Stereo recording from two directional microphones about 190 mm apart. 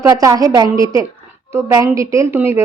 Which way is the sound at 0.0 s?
20° right (ahead or behind).